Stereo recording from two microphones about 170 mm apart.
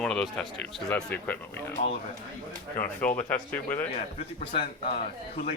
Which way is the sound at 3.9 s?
40° left (ahead or behind).